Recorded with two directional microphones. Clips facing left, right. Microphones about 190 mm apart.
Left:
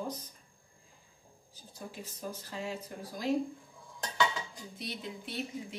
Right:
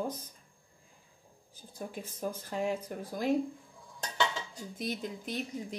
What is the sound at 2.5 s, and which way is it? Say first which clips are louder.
Speech: right 8 dB; 50° right (ahead or behind).